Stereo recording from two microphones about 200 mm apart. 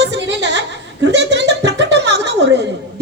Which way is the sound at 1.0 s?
60° right (ahead or behind).